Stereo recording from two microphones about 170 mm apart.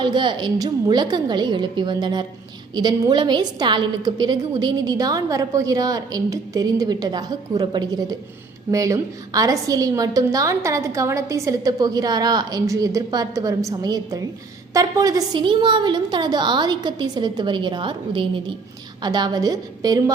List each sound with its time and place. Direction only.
0.0 s a woman's voice: 25° right (ahead or behind)